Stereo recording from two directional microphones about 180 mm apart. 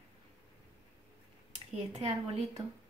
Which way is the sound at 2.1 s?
25° right (ahead or behind).